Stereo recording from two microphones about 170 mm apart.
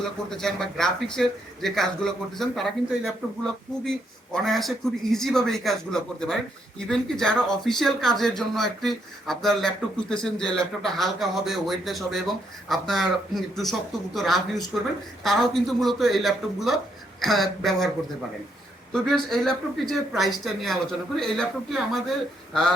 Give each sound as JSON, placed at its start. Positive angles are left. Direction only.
{"t": 0.3, "sound": "speech", "side_deg": 5}
{"t": 19.0, "sound": "speech", "side_deg": 0}